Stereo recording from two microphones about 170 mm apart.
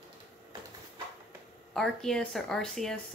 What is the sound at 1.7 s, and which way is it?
Speech, 5° left (ahead or behind).